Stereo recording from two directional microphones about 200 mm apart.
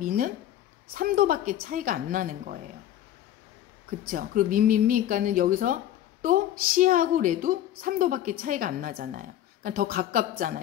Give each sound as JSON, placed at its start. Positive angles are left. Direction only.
{"t": 0.0, "sound": "a woman's voice", "side_deg": -45}
{"t": 4.1, "sound": "a woman's voice", "side_deg": -45}